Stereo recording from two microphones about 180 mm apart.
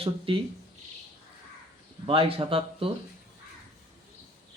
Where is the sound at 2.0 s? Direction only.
30° right (ahead or behind).